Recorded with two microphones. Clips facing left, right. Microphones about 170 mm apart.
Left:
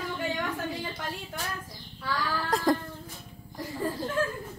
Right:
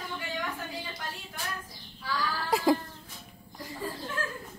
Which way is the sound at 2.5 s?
5° right (ahead or behind).